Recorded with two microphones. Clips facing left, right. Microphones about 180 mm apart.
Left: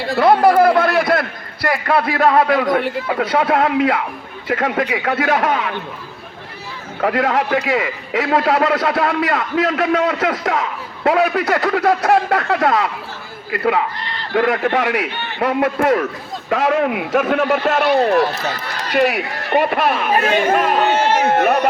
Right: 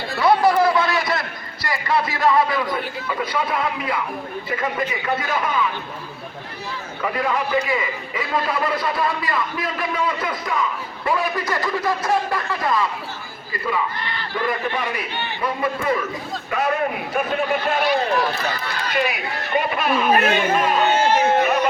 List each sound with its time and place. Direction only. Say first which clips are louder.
0.2 s a sound: left 4 dB; 55° left (ahead or behind)
1.6 s a man's voice: left 5 dB; 60° left (ahead or behind); by 5.7 s 80° left
7.0 s a man's voice: left 6 dB; 90° left
16.5 s speech: left 6 dB; 90° left
18.9 s a man's voice: left 8 dB; 70° left (ahead or behind)
20.5 s chatter: left 3 dB; 65° left (ahead or behind)